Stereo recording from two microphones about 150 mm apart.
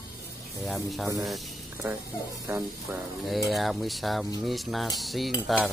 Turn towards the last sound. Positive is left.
turn(degrees=0)  # may be behind; listen again after turning